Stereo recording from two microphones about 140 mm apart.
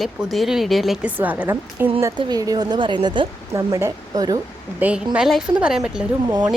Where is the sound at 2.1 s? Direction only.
25° right (ahead or behind).